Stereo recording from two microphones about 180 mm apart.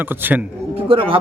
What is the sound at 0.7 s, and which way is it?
Speech, 30° right (ahead or behind).